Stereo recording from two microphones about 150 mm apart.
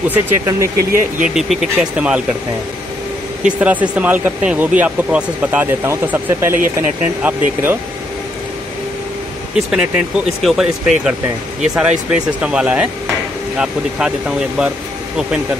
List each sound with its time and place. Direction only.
0.1 s speech: 20° right (ahead or behind)
1.2 s speech: 5° right (ahead or behind)
3.4 s speech: 10° right (ahead or behind)
9.7 s speech: 5° right (ahead or behind)